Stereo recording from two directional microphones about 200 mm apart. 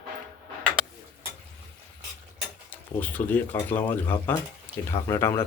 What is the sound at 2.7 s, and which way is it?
Speech, 10° left (ahead or behind).